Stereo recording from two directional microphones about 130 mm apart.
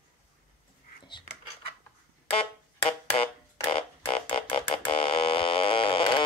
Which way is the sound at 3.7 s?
40° left (ahead or behind).